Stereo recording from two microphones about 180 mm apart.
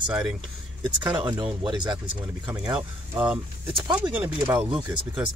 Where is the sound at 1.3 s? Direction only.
25° right (ahead or behind).